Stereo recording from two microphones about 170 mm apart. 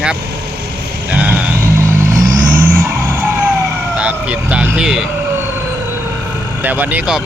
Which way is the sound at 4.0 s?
5° right (ahead or behind).